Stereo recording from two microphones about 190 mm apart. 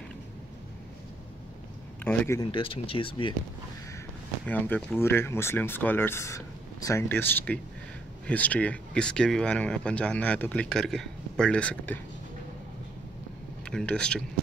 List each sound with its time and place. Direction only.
2.0 s speech: 15° left (ahead or behind)
2.5 s speech: 30° left (ahead or behind)
4.5 s speech: 10° left (ahead or behind)
13.7 s speech: 5° left (ahead or behind)